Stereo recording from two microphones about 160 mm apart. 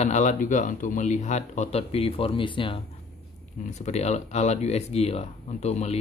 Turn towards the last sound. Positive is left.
turn(degrees=45)  # may be behind; listen again after turning